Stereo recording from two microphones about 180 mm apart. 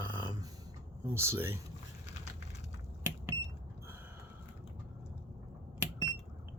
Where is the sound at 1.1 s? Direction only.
15° right (ahead or behind).